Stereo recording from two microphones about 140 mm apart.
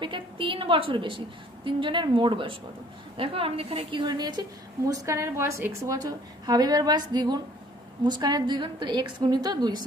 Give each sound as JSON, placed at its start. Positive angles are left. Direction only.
{"t": 0.0, "sound": "a woman's voice", "side_deg": -35}